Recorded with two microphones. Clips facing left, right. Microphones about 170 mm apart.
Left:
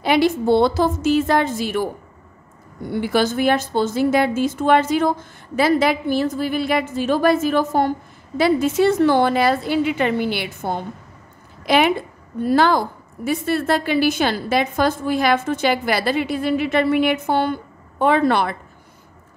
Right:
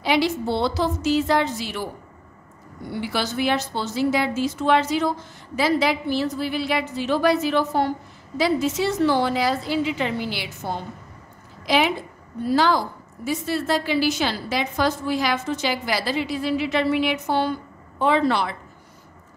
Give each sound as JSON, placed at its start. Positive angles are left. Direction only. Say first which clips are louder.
{"t": 0.0, "sound": "a woman's voice", "louder": "left 4 dB", "side_deg": 55}
{"t": 2.9, "sound": "a woman's voice", "louder": "left 7 dB", "side_deg": 50}